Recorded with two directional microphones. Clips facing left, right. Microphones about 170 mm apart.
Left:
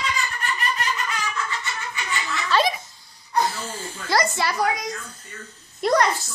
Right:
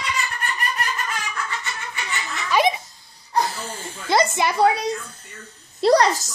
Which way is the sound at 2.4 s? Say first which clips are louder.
Right 2 dB; 20° right (ahead or behind).